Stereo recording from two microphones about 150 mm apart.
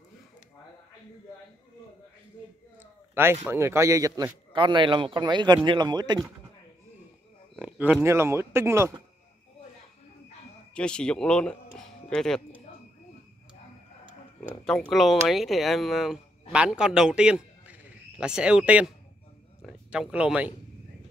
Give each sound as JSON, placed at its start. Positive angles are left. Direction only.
{"t": 2.8, "sound": "a sound", "side_deg": -15}
{"t": 3.4, "sound": "a man's voice", "side_deg": -15}
{"t": 7.5, "sound": "speech", "side_deg": -10}
{"t": 10.7, "sound": "speech", "side_deg": 5}
{"t": 14.6, "sound": "a man's voice", "side_deg": 0}